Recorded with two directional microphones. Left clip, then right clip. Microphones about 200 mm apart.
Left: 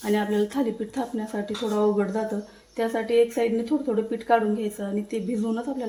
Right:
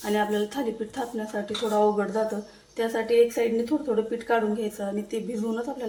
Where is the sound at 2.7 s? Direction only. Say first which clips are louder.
Left 1 dB; 30° left (ahead or behind).